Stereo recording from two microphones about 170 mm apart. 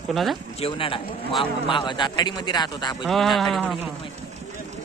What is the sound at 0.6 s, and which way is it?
A man's voice, 30° left (ahead or behind).